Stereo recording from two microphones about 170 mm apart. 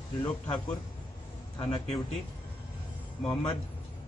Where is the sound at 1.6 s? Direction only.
35° left (ahead or behind).